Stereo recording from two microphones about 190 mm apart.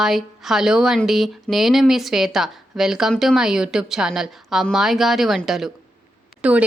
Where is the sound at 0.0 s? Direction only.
Centre (ahead or behind).